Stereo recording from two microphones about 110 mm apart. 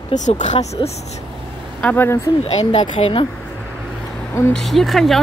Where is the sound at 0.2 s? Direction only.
90° left.